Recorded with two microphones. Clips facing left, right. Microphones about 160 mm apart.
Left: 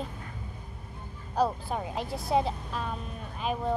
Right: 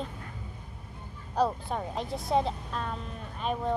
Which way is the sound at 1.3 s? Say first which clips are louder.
Even; 5° left (ahead or behind).